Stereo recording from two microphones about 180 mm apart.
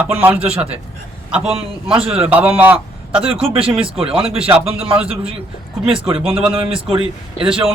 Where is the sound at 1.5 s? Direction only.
30° right (ahead or behind).